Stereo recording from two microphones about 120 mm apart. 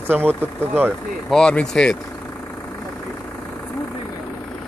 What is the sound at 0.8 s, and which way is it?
Speech, 5° left (ahead or behind).